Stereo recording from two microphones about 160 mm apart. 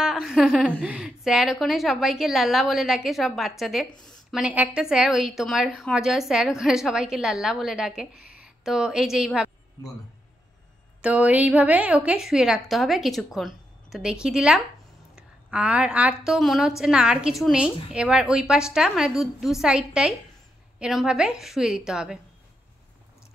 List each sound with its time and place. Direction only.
0.0 s a woman's voice: 5° right (ahead or behind)
11.0 s a woman's voice: 10° right (ahead or behind)